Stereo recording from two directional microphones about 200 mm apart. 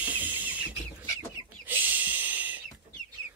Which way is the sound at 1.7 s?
10° right (ahead or behind).